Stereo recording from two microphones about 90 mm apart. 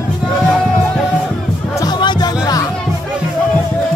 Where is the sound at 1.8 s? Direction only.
55° left (ahead or behind).